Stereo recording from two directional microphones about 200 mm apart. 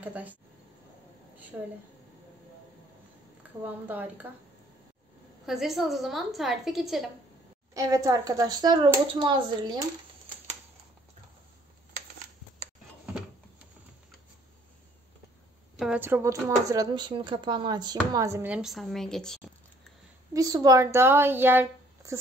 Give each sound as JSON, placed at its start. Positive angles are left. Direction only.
{"t": 0.0, "sound": "speech", "side_deg": -10}
{"t": 1.5, "sound": "speech", "side_deg": -10}
{"t": 3.6, "sound": "speech", "side_deg": -10}
{"t": 5.5, "sound": "a woman's voice", "side_deg": 0}
{"t": 7.7, "sound": "speech", "side_deg": -20}
{"t": 15.8, "sound": "speech", "side_deg": -5}
{"t": 20.3, "sound": "speech", "side_deg": -20}